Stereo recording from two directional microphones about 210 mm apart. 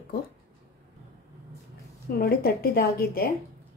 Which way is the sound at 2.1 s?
50° left (ahead or behind).